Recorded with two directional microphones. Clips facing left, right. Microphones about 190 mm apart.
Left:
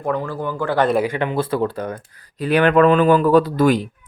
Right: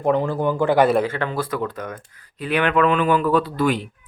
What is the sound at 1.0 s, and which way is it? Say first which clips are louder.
Speech: left 3 dB; 15° left (ahead or behind).